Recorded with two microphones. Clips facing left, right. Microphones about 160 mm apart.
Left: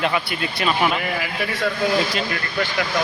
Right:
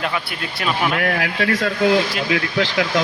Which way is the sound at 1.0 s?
80° right.